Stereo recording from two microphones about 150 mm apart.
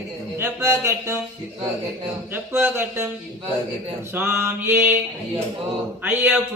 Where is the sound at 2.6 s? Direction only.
15° right (ahead or behind).